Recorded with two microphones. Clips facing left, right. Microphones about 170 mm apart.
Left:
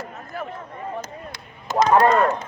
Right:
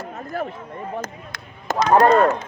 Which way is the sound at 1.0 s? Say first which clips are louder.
Right 2 dB; 45° right (ahead or behind).